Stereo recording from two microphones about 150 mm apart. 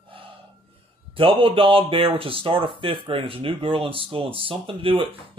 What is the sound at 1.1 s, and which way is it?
Speech, 35° right (ahead or behind).